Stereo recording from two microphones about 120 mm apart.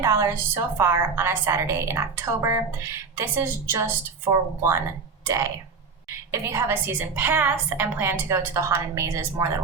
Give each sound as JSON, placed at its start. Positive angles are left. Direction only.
{"t": 0.0, "sound": "a woman's voice", "side_deg": -25}